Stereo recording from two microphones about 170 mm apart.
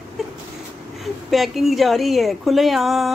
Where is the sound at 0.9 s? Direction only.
Centre (ahead or behind).